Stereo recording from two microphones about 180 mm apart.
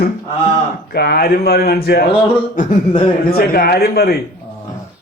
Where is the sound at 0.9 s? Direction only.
60° left (ahead or behind).